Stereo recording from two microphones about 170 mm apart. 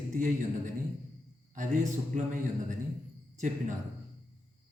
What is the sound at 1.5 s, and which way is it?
Speech, 50° right (ahead or behind).